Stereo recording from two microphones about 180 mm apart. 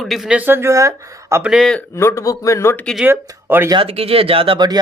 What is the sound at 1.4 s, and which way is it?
Speech, 5° right (ahead or behind).